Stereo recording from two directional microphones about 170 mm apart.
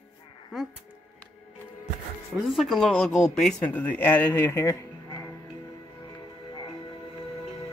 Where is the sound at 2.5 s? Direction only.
Centre (ahead or behind).